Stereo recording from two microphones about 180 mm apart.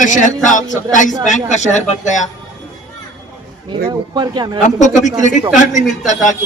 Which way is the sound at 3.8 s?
25° right (ahead or behind).